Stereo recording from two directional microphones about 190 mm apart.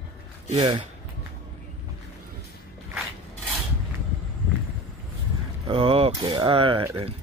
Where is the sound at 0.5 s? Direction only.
25° right (ahead or behind).